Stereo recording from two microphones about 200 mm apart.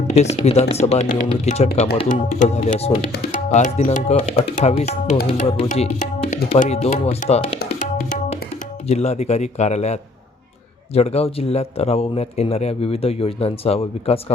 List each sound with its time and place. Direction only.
0.1 s speech: 35° left (ahead or behind)
7.6 s music: 45° left (ahead or behind)
8.9 s speech: 35° left (ahead or behind)